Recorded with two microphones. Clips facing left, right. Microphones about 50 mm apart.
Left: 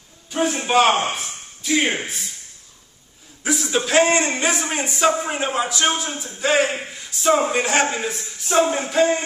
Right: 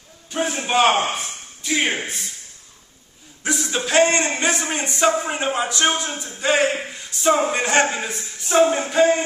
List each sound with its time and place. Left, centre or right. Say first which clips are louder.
0.3 s a man's voice: left 2 dB; centre
1.1 s a sound: right 1 dB; centre
2.0 s a man's voice: even; centre
3.4 s a man's voice: left 2 dB; centre